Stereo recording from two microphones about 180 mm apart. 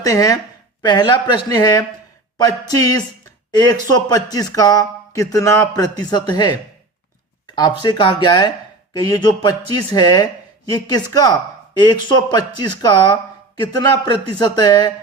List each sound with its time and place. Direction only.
0.0 s speech: 20° left (ahead or behind)